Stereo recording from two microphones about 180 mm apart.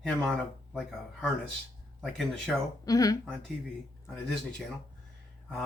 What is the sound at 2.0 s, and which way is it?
Speech, 5° right (ahead or behind).